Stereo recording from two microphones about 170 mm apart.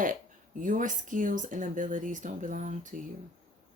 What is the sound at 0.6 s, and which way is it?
Speech, 50° right (ahead or behind).